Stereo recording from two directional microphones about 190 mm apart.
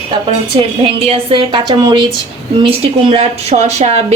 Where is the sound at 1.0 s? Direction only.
25° right (ahead or behind).